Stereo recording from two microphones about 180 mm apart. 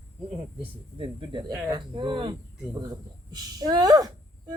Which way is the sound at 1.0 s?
30° right (ahead or behind).